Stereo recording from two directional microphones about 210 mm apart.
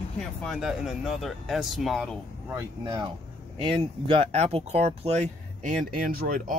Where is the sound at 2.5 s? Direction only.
15° right (ahead or behind).